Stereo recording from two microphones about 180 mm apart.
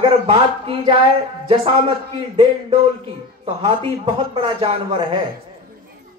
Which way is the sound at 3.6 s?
30° right (ahead or behind).